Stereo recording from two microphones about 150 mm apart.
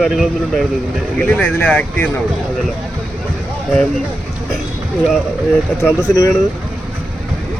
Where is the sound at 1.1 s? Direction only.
10° left (ahead or behind).